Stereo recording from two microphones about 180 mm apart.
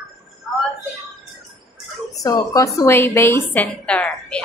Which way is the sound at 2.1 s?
20° left (ahead or behind).